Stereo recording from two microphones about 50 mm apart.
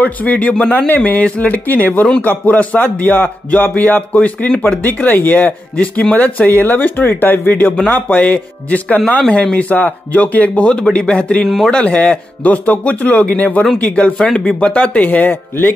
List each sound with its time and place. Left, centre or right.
0.0 s speech: left
11.4 s speech: centre
11.7 s speech: left